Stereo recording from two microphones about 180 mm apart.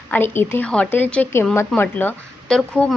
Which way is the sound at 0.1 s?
10° left (ahead or behind).